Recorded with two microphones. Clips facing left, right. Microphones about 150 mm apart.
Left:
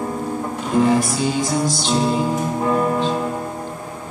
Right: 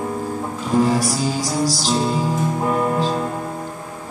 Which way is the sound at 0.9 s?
35° right (ahead or behind).